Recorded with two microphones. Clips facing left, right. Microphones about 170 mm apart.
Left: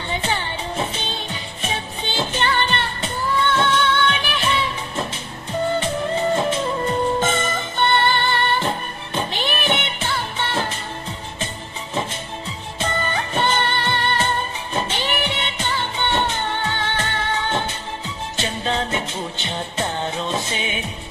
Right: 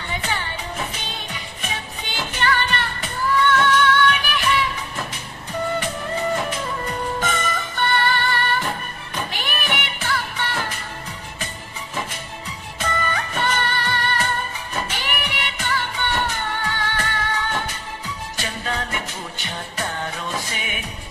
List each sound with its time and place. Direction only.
0.1 s music: 30° left (ahead or behind)
11.9 s music: 25° left (ahead or behind)